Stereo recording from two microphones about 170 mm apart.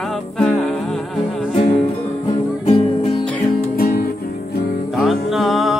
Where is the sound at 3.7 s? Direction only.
60° left (ahead or behind).